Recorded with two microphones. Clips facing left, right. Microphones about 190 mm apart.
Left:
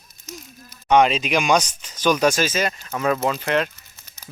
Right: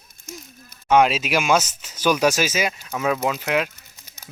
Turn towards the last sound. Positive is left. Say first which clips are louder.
# right 1 dB
turn(degrees=-10)  # may be behind; listen again after turning